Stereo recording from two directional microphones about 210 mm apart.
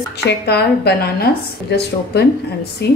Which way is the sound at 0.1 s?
50° left (ahead or behind).